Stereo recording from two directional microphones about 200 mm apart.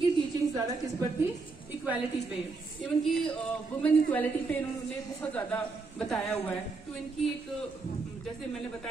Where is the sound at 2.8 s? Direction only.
10° left (ahead or behind).